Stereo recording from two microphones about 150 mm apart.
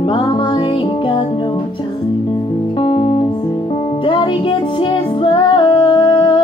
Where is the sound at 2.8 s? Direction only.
35° left (ahead or behind).